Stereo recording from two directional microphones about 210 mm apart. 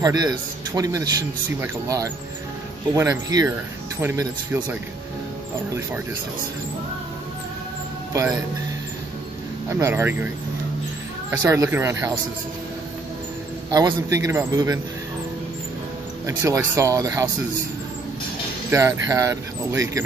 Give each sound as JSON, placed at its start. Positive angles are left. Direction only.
{"t": 0.0, "sound": "speech", "side_deg": -15}
{"t": 8.1, "sound": "speech", "side_deg": -15}
{"t": 9.7, "sound": "speech", "side_deg": -15}
{"t": 13.7, "sound": "speech", "side_deg": -20}
{"t": 16.3, "sound": "speech", "side_deg": -15}
{"t": 18.7, "sound": "speech", "side_deg": -15}